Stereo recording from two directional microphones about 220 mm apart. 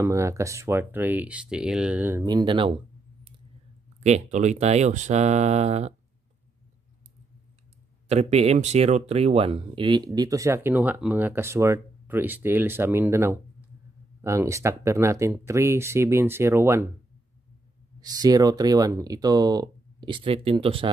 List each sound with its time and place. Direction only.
0.0 s speech: 15° right (ahead or behind)
2.2 s speech: 20° right (ahead or behind)
4.0 s speech: 30° right (ahead or behind)
8.1 s speech: 30° right (ahead or behind); by 16.8 s 10° right (ahead or behind)
18.0 s speech: 15° right (ahead or behind)